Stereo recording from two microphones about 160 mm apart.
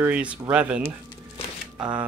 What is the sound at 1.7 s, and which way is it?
Speech, 25° right (ahead or behind).